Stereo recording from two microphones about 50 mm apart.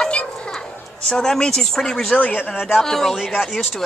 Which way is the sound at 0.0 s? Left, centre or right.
Centre.